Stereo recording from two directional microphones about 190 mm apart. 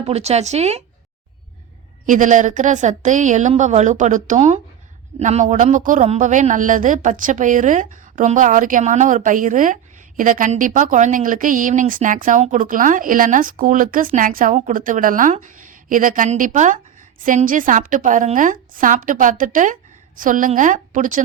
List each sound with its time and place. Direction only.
0.0 s a woman's voice: 35° right (ahead or behind)
2.0 s a woman's voice: 40° right (ahead or behind)